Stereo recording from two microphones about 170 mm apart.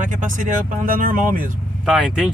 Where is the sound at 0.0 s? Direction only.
50° right (ahead or behind).